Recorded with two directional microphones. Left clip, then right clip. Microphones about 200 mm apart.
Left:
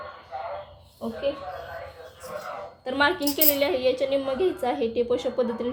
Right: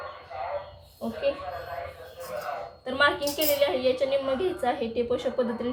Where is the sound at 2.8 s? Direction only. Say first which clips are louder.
Left 1 dB; 35° left (ahead or behind).